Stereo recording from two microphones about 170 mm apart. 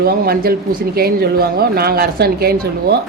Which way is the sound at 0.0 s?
65° right (ahead or behind).